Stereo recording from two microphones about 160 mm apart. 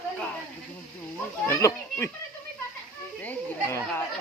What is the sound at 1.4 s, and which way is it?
Speech, 15° left (ahead or behind).